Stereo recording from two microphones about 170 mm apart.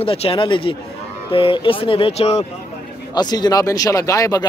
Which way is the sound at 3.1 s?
25° left (ahead or behind).